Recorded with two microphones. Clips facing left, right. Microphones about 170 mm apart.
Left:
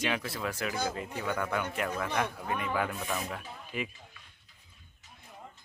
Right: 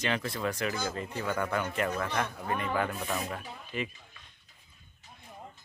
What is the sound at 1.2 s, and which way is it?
Speech, centre (ahead or behind).